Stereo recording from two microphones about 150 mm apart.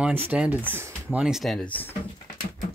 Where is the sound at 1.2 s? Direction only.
Centre (ahead or behind).